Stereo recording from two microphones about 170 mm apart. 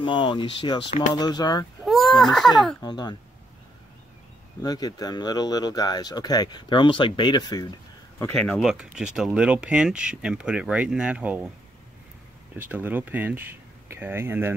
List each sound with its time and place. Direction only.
0.0 s speech: 30° left (ahead or behind)
1.9 s speech: centre (ahead or behind)
2.8 s speech: 25° left (ahead or behind)
4.6 s speech: 20° left (ahead or behind)
8.4 s speech: centre (ahead or behind)
12.5 s speech: 10° right (ahead or behind)